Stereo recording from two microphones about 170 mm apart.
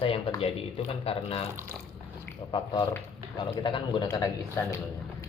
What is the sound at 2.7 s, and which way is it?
Speech, 25° left (ahead or behind).